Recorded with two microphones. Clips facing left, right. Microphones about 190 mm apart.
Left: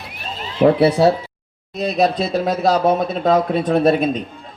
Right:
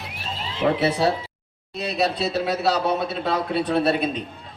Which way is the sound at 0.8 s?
40° left (ahead or behind).